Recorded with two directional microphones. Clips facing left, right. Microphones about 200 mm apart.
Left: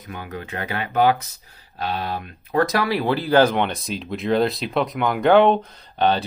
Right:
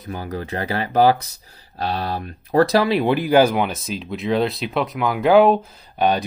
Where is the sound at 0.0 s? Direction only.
35° right (ahead or behind).